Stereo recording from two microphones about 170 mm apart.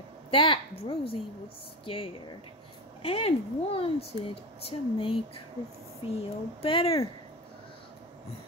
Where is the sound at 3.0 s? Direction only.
35° left (ahead or behind).